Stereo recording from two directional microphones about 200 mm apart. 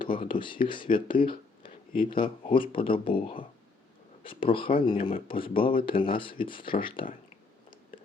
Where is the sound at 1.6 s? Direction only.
45° left (ahead or behind).